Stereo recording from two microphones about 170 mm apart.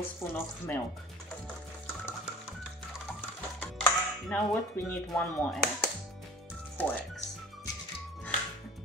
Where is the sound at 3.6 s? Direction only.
5° left (ahead or behind).